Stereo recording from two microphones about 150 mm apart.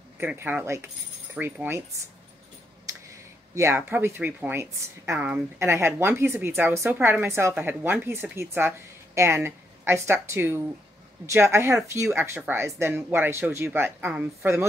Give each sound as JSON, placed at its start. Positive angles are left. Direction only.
{"t": 0.2, "sound": "a woman's voice", "side_deg": -15}
{"t": 3.5, "sound": "a woman's voice", "side_deg": -15}